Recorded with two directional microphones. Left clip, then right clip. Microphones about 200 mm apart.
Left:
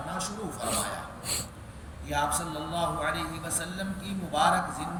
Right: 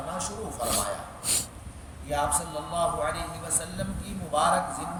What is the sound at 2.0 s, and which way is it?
A man's voice, 15° right (ahead or behind).